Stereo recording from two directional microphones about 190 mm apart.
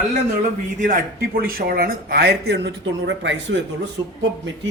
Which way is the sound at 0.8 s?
45° right (ahead or behind).